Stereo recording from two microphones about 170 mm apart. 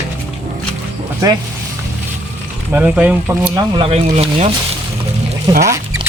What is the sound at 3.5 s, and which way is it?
Speech, 35° right (ahead or behind).